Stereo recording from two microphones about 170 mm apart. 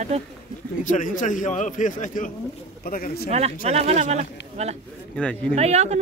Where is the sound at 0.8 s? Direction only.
50° left (ahead or behind).